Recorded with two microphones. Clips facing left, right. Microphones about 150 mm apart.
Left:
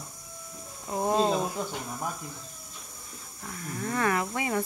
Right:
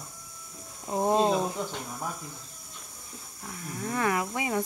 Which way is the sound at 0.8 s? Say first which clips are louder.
Right 1 dB; 20° right (ahead or behind).